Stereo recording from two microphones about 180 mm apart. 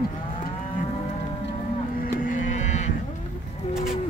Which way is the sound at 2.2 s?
45° left (ahead or behind).